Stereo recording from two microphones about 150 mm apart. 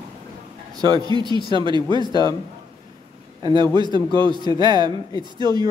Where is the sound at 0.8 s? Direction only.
25° right (ahead or behind).